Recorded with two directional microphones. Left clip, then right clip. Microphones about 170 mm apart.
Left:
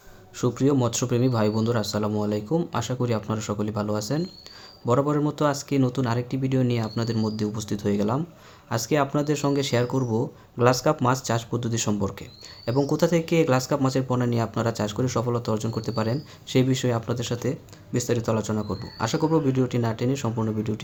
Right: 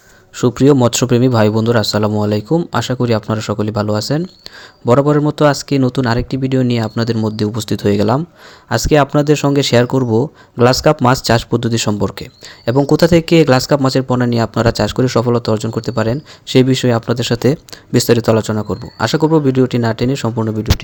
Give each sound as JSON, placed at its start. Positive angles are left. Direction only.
{"t": 0.3, "sound": "speech", "side_deg": -45}